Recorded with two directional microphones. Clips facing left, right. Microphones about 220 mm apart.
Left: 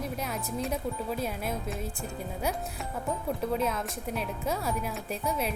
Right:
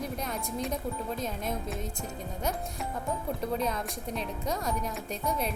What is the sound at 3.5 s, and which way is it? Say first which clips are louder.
Speech: left 1 dB; 5° left (ahead or behind).